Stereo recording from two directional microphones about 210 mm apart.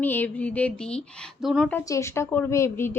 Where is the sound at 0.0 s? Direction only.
10° left (ahead or behind).